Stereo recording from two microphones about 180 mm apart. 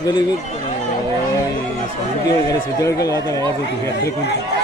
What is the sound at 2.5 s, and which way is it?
Speech, 20° left (ahead or behind).